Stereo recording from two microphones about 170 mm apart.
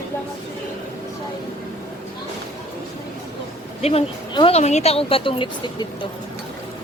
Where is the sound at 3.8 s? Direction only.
35° left (ahead or behind).